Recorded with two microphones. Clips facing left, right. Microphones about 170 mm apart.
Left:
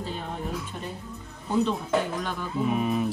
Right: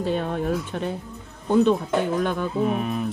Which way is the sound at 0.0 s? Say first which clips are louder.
Right 9 dB; 70° right (ahead or behind).